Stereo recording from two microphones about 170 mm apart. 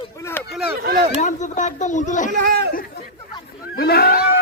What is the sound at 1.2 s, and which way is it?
Speech, 45° left (ahead or behind).